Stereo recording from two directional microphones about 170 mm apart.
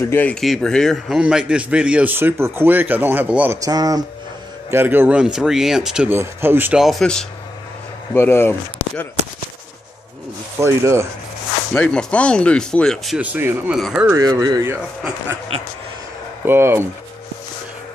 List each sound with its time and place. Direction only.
0.1 s a man's voice: 10° left (ahead or behind); by 3.5 s 10° right (ahead or behind)
3.6 s a man's voice: 20° right (ahead or behind)
6.8 s speech: centre (ahead or behind)
8.1 s speech: 15° left (ahead or behind)
10.6 s a man's voice: 15° right (ahead or behind)
11.7 s speech: 5° left (ahead or behind)
14.1 s speech: 20° right (ahead or behind)
16.4 s a man's voice: 15° right (ahead or behind)